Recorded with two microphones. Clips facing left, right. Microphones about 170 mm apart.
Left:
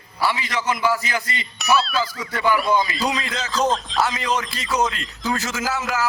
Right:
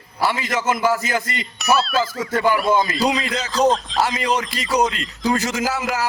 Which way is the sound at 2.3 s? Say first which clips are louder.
Right 2 dB; 45° right (ahead or behind).